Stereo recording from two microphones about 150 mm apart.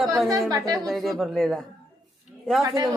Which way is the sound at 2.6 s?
20° right (ahead or behind).